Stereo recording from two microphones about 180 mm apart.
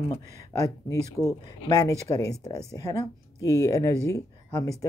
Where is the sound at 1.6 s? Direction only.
20° left (ahead or behind).